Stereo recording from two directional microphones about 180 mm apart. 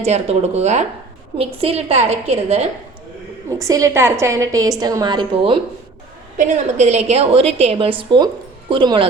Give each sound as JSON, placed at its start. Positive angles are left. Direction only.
{"t": 0.0, "sound": "a woman's voice", "side_deg": -35}
{"t": 3.6, "sound": "a woman's voice", "side_deg": -20}
{"t": 6.3, "sound": "a woman's voice", "side_deg": -40}